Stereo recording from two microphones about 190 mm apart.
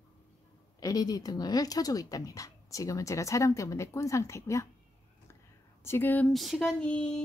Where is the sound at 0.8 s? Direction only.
20° left (ahead or behind).